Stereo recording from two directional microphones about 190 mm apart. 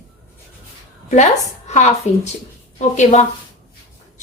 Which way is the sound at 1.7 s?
40° left (ahead or behind).